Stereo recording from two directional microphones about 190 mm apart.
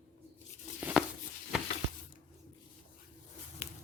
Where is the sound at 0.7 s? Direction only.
10° right (ahead or behind).